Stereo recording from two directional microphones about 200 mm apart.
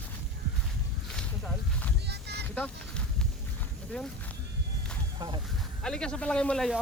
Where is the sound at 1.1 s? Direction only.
5° left (ahead or behind).